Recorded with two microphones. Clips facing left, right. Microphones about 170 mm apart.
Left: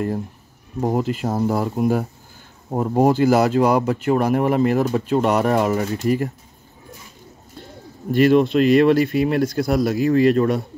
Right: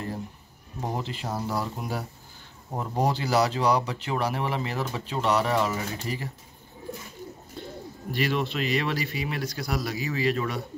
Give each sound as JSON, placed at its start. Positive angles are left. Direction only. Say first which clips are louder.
{"t": 0.7, "sound": "speech", "louder": "left 11 dB", "side_deg": 50}
{"t": 8.1, "sound": "speech", "louder": "left 13 dB", "side_deg": 50}